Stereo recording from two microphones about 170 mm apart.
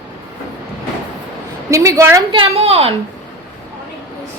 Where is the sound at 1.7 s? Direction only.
20° right (ahead or behind).